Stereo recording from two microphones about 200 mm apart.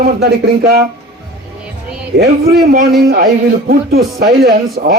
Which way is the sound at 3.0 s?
50° right (ahead or behind).